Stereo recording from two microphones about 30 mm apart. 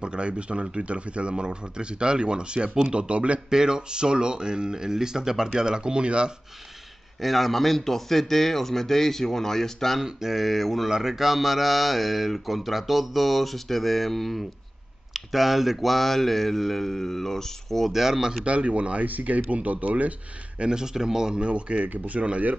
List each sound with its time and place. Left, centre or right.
0.0 s speech: right
3.4 s speech: right
7.2 s speech: centre
10.0 s speech: centre
10.9 s speech: centre
15.1 s speech: centre
17.9 s speech: centre
18.4 s speech: right
19.0 s speech: right
20.6 s speech: right
21.4 s speech: right
21.8 s speech: right